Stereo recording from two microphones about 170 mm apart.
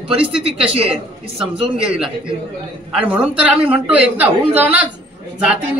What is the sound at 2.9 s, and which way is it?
A woman's voice, 5° right (ahead or behind).